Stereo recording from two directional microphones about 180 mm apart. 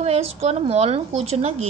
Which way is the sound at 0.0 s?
35° right (ahead or behind).